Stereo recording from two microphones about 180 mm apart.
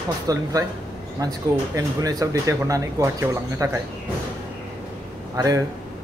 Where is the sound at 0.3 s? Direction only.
20° right (ahead or behind).